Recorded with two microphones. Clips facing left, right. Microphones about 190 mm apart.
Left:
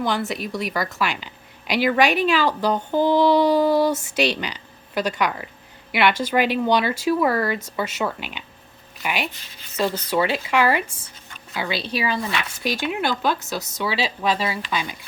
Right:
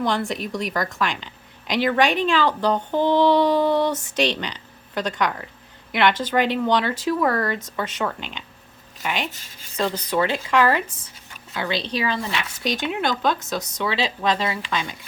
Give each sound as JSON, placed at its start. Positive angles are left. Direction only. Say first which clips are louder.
{"t": 0.0, "sound": "a woman's voice", "louder": "even", "side_deg": 5}
{"t": 9.3, "sound": "speech", "louder": "left 1 dB", "side_deg": -45}
{"t": 10.1, "sound": "a woman's voice", "louder": "even", "side_deg": 10}